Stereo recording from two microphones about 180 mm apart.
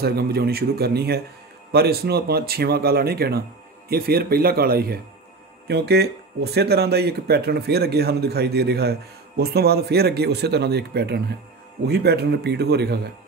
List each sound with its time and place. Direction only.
0.0 s speech: 60° right (ahead or behind)